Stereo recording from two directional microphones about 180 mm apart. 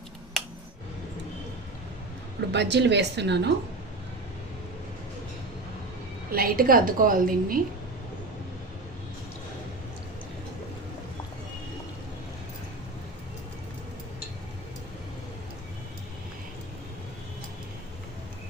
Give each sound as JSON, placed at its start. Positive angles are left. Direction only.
{"t": 2.5, "sound": "speech", "side_deg": -70}
{"t": 6.3, "sound": "a woman's voice", "side_deg": -55}